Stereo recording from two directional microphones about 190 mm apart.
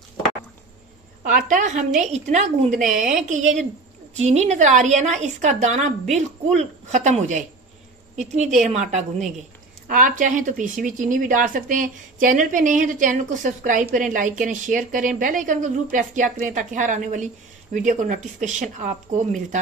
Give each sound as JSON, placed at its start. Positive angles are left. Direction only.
{"t": 1.3, "sound": "a woman's voice", "side_deg": -40}